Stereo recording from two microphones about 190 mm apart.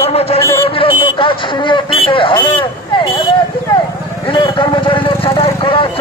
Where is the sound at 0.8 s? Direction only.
25° left (ahead or behind).